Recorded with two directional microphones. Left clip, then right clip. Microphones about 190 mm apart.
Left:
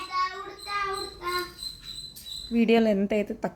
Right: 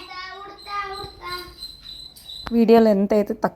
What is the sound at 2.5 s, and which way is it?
Speech, 25° right (ahead or behind).